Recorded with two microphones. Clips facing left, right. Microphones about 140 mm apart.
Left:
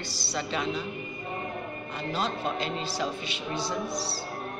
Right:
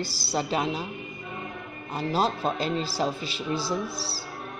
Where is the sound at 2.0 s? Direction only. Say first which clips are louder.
Right 5 dB; 35° right (ahead or behind).